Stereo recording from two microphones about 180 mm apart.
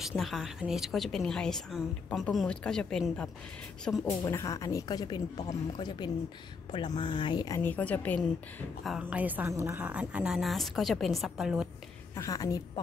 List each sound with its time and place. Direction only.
0.0 s a woman's voice: centre (ahead or behind)
4.2 s a woman's voice: 20° left (ahead or behind)
8.9 s a woman's voice: 10° right (ahead or behind)
12.2 s a woman's voice: 20° left (ahead or behind)